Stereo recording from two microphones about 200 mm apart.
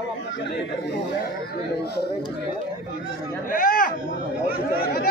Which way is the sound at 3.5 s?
45° left (ahead or behind).